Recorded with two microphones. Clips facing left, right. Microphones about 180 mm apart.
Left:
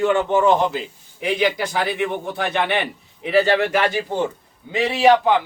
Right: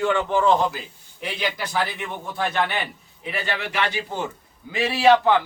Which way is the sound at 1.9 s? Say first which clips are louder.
Left 9 dB; 65° left (ahead or behind).